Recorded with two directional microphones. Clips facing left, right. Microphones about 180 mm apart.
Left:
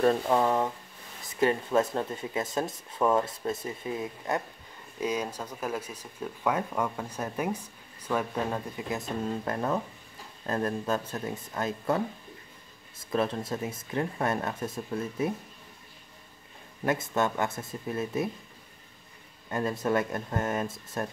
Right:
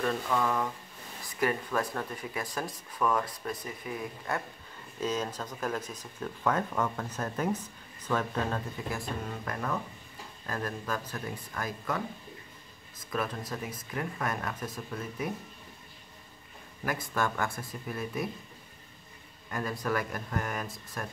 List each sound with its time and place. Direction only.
0.0 s speech: 35° left (ahead or behind)
5.0 s speech: 10° left (ahead or behind); by 12.0 s 25° left (ahead or behind)
13.1 s speech: 30° left (ahead or behind)
16.8 s speech: 25° left (ahead or behind)
19.5 s speech: 25° left (ahead or behind)